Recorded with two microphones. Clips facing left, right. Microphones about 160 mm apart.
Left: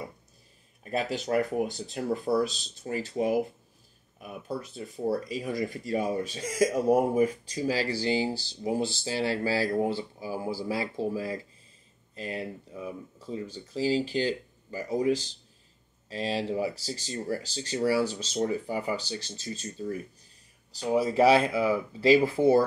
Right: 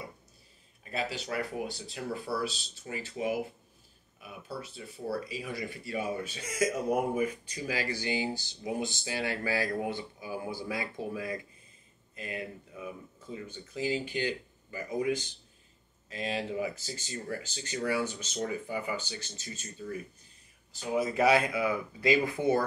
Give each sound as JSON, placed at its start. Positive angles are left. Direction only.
{"t": 0.9, "sound": "speech", "side_deg": 45}